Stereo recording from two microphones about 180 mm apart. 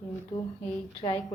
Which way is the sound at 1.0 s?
25° left (ahead or behind).